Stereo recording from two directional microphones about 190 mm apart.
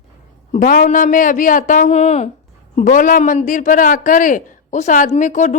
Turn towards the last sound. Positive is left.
turn(degrees=40)  # may be behind; listen again after turning